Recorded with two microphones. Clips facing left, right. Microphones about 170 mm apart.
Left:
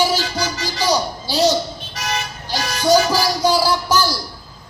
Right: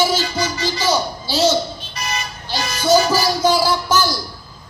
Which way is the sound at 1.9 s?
85° left.